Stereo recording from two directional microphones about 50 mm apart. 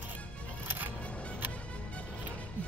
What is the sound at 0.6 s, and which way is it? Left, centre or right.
Music, right.